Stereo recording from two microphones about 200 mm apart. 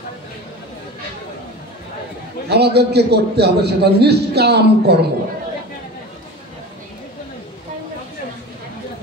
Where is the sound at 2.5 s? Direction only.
55° right (ahead or behind).